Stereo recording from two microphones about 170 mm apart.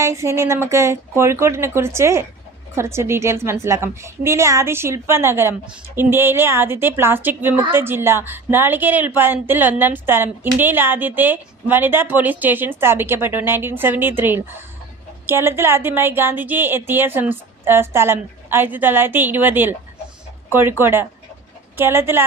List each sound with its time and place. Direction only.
0.0 s a woman's voice: 15° right (ahead or behind)